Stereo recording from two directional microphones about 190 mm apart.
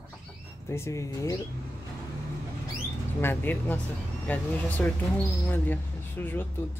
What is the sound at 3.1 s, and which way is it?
Speech, 10° left (ahead or behind).